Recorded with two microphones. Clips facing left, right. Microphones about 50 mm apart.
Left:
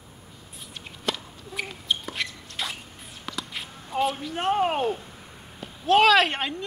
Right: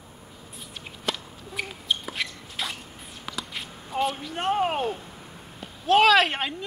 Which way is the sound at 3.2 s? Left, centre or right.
Centre.